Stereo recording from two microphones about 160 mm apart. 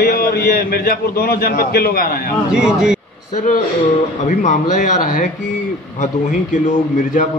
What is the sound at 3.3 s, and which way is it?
A man's voice, 50° left (ahead or behind).